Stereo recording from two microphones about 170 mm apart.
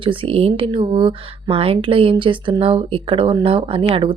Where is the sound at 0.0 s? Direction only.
30° right (ahead or behind).